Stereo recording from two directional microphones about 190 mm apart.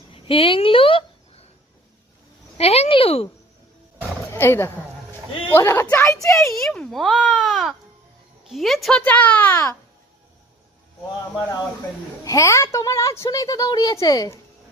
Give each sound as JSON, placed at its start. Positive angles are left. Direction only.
{"t": 0.1, "sound": "a sound", "side_deg": 30}
{"t": 2.6, "sound": "speech", "side_deg": 35}
{"t": 4.3, "sound": "a woman's voice", "side_deg": 10}
{"t": 6.2, "sound": "a child's voice", "side_deg": 0}
{"t": 12.2, "sound": "a woman's voice", "side_deg": 15}